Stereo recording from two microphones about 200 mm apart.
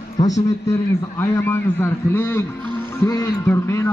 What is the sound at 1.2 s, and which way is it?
A man's voice, 10° left (ahead or behind).